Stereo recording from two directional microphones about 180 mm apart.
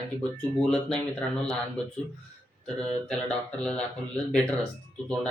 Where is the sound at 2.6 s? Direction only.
5° left (ahead or behind).